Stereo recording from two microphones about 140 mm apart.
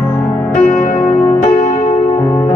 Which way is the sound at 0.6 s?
70° left (ahead or behind).